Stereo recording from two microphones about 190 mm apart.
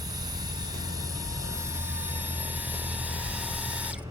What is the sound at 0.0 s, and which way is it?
Vehicle, 20° right (ahead or behind).